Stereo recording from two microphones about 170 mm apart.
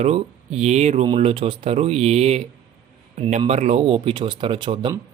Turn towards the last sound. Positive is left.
turn(degrees=-30)  # may be behind; listen again after turning